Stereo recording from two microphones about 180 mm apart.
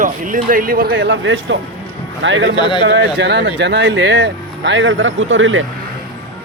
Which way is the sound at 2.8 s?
80° right.